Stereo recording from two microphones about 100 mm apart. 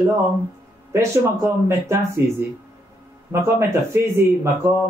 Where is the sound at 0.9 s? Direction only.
25° right (ahead or behind).